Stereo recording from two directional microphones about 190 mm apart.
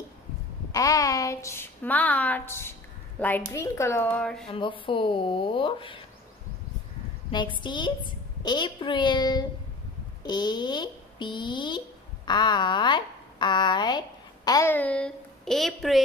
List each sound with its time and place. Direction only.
0.7 s a woman's voice: 20° left (ahead or behind); by 4.5 s 5° left (ahead or behind)
4.5 s speech: 25° left (ahead or behind)
7.2 s speech: 25° left (ahead or behind); by 16.0 s centre (ahead or behind)